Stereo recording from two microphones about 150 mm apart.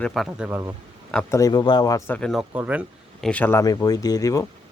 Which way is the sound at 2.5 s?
10° right (ahead or behind).